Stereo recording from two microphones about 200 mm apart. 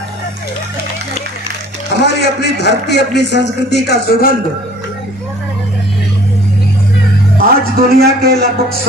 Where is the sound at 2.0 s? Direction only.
55° left (ahead or behind).